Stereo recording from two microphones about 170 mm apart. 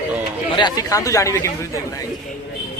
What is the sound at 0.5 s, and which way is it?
Speech, 25° left (ahead or behind).